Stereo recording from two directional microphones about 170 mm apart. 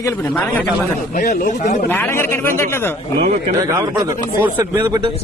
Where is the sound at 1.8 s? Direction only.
10° left (ahead or behind).